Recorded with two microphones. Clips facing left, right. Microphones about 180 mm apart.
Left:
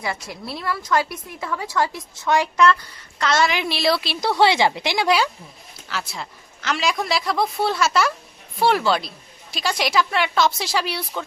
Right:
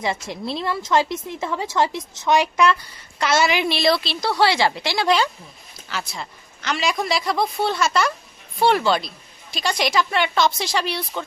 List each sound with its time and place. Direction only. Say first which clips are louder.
0.0 s a woman's voice: right 4 dB; 20° right (ahead or behind); by 11.3 s 5° left (ahead or behind)